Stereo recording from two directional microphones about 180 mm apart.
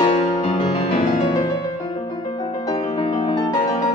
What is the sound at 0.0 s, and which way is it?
Music, 25° left (ahead or behind).